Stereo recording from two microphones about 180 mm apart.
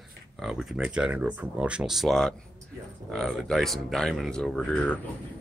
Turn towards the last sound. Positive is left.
turn(degrees=5)  # may be behind; listen again after turning